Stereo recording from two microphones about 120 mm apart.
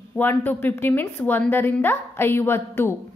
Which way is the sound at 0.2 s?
15° left (ahead or behind).